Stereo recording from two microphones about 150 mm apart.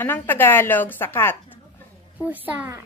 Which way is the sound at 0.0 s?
15° left (ahead or behind).